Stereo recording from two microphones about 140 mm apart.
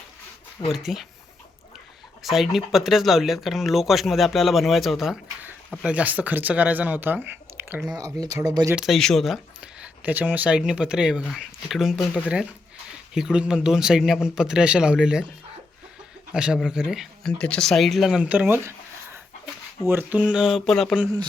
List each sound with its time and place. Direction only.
0.7 s speech: centre (ahead or behind)
2.2 s speech: centre (ahead or behind); by 8.7 s 20° right (ahead or behind)
8.7 s speech: centre (ahead or behind)
13.1 s speech: 5° right (ahead or behind)
16.3 s speech: 5° right (ahead or behind)
19.9 s speech: 15° right (ahead or behind); by 21.0 s 5° left (ahead or behind)